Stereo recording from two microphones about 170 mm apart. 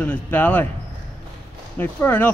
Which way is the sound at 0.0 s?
10° left (ahead or behind).